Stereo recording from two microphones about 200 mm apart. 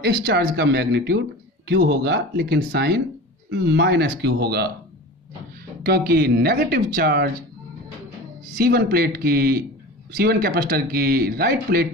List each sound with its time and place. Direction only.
0.0 s speech: 50° right (ahead or behind)
5.9 s speech: 50° right (ahead or behind)
8.5 s speech: 50° right (ahead or behind)